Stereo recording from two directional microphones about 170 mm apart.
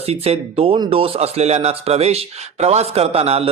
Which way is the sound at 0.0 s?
35° right (ahead or behind).